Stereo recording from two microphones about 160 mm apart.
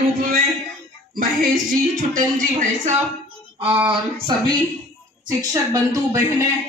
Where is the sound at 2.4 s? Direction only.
50° right (ahead or behind).